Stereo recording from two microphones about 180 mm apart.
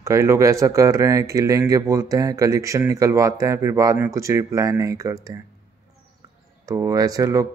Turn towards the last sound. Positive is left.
turn(degrees=-20)  # may be behind; listen again after turning